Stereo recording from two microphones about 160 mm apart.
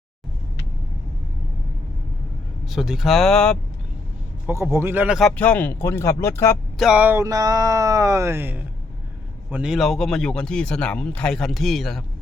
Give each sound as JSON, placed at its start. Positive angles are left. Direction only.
{"t": 2.6, "sound": "speech", "side_deg": 0}
{"t": 4.4, "sound": "speech", "side_deg": -15}
{"t": 5.4, "sound": "speech", "side_deg": 10}
{"t": 6.7, "sound": "speech", "side_deg": -5}